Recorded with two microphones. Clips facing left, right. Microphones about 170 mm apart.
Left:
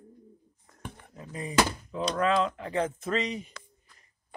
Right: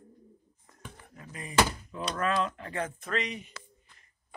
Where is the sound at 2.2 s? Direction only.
15° left (ahead or behind).